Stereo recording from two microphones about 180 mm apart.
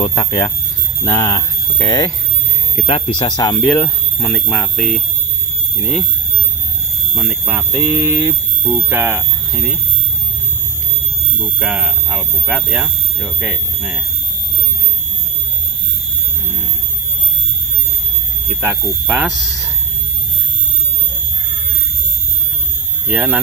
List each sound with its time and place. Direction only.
0.1 s speech: 15° left (ahead or behind)
2.7 s speech: 35° left (ahead or behind); by 6.0 s centre (ahead or behind)
7.2 s speech: 10° right (ahead or behind)
11.6 s speech: 5° right (ahead or behind)
18.5 s speech: 10° right (ahead or behind)
23.0 s speech: 10° right (ahead or behind)